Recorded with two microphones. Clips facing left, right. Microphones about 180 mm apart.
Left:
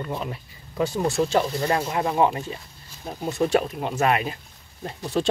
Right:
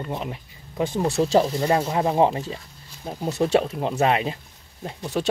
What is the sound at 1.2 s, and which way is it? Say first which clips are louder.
Speech: right 4 dB; 35° right (ahead or behind).